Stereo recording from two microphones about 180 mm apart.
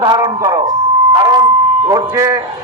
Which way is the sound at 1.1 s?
20° right (ahead or behind).